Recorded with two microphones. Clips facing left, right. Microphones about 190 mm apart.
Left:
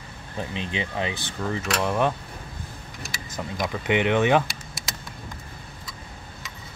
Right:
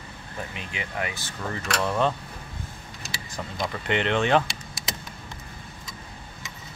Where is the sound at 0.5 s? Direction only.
25° left (ahead or behind).